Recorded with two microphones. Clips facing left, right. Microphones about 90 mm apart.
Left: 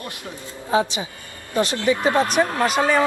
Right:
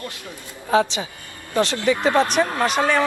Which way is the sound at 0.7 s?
15° left (ahead or behind).